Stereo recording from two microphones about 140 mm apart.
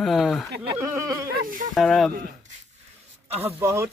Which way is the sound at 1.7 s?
Centre (ahead or behind).